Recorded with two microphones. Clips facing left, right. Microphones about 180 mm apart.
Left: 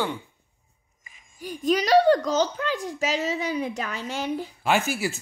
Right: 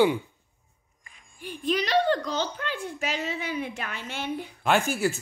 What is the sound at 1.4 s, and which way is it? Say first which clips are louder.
Speech: left 4 dB; 40° left (ahead or behind).